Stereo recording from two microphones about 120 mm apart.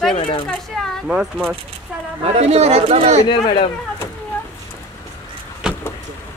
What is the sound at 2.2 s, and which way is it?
Speech, 55° right (ahead or behind).